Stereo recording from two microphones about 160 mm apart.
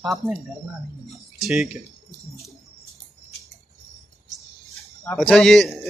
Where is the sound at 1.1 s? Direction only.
Centre (ahead or behind).